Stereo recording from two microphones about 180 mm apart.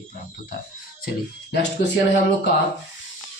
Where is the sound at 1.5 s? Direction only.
75° left (ahead or behind).